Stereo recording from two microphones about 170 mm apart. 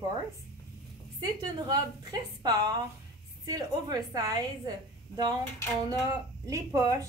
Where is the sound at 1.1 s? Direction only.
25° right (ahead or behind).